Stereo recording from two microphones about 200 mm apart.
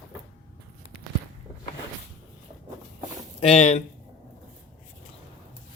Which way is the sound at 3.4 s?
30° left (ahead or behind).